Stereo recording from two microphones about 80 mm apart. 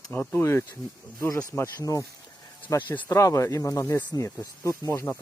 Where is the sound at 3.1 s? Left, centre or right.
Left.